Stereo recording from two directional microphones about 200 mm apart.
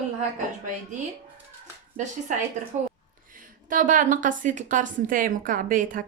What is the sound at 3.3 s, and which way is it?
A woman's voice, 40° right (ahead or behind).